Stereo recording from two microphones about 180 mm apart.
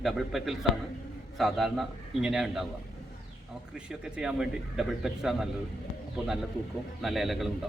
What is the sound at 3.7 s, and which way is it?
A man's voice, 5° right (ahead or behind).